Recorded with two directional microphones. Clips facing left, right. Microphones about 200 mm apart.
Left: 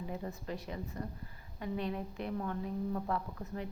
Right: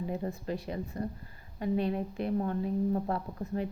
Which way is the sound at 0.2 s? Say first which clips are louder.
Right 6 dB; 30° right (ahead or behind).